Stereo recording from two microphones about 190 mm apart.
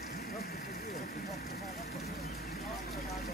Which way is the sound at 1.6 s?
Centre (ahead or behind).